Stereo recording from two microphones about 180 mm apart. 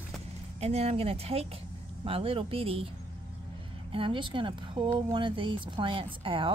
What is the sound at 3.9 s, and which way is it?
Speech, 30° right (ahead or behind).